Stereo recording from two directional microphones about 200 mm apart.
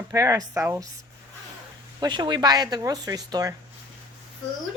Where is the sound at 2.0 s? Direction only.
20° right (ahead or behind).